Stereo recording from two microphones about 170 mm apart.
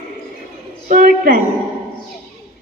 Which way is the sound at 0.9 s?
50° right (ahead or behind).